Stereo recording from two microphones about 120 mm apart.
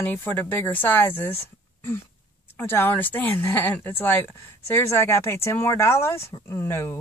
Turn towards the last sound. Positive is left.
turn(degrees=20)  # may be behind; listen again after turning